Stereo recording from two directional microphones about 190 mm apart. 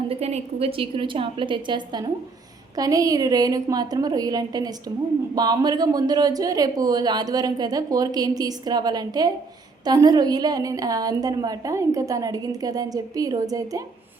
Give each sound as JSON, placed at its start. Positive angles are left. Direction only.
{"t": 0.1, "sound": "speech", "side_deg": -35}